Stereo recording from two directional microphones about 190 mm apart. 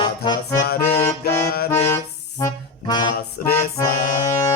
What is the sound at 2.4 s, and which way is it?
Music, 20° left (ahead or behind).